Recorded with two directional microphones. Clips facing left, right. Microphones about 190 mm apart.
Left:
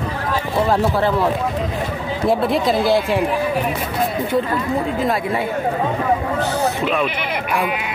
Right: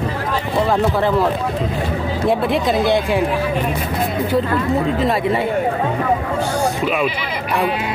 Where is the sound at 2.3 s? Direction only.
Centre (ahead or behind).